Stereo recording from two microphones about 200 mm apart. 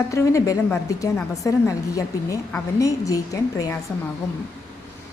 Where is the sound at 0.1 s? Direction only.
15° left (ahead or behind).